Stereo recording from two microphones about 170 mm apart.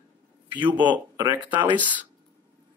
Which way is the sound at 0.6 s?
25° right (ahead or behind).